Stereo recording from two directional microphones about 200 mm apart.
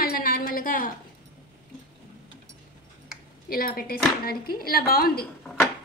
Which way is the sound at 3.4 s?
45° left (ahead or behind).